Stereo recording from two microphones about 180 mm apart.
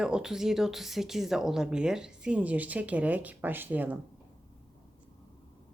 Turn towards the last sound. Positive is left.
turn(degrees=-10)  # may be behind; listen again after turning